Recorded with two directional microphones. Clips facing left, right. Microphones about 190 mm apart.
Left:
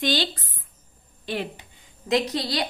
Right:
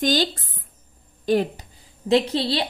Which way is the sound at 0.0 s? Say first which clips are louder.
Right 4 dB; 45° right (ahead or behind).